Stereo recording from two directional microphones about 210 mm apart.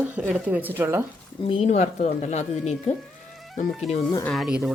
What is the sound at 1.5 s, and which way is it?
Speech, 30° left (ahead or behind).